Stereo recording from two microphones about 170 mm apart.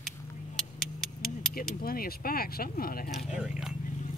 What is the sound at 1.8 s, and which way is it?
Speech, 60° left (ahead or behind).